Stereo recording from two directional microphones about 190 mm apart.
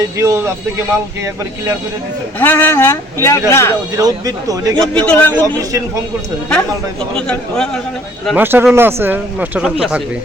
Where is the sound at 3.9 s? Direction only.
20° right (ahead or behind).